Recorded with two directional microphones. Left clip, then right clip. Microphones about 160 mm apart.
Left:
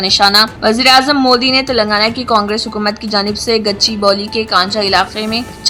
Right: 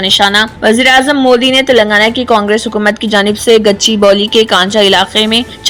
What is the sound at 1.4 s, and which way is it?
A woman's voice, 25° right (ahead or behind).